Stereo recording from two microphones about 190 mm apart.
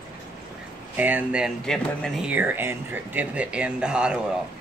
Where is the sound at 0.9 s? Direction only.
10° right (ahead or behind).